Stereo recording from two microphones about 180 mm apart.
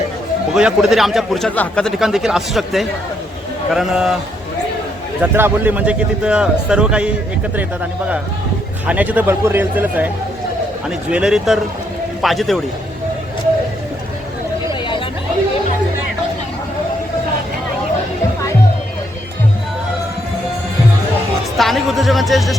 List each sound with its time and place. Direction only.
0.5 s a man's voice: centre (ahead or behind)
5.2 s a man's voice: 10° right (ahead or behind)
8.9 s a man's voice: 10° right (ahead or behind)
14.7 s chatter: 25° left (ahead or behind)
21.6 s speech: centre (ahead or behind)